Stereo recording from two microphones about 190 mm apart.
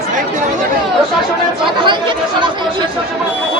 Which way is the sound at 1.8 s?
25° right (ahead or behind).